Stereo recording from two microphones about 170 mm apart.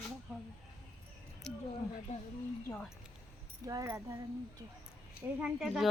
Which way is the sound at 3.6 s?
20° right (ahead or behind).